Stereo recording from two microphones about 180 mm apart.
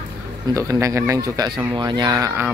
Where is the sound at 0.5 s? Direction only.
15° right (ahead or behind).